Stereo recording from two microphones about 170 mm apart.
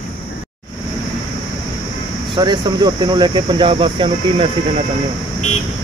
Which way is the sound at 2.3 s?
25° right (ahead or behind).